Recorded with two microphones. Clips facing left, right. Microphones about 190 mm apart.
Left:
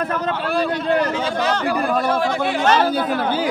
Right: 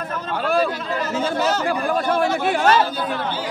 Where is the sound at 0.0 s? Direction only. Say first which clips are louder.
Left 6 dB; 65° left (ahead or behind).